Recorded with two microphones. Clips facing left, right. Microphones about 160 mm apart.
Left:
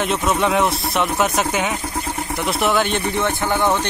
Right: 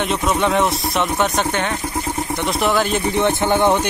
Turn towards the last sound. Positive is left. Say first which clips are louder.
# right 3 dB
turn(degrees=-15)  # may be behind; listen again after turning